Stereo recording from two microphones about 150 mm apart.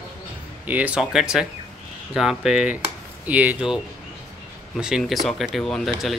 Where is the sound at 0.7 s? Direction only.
10° right (ahead or behind).